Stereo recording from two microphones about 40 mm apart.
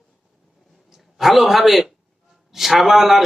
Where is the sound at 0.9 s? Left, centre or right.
Centre.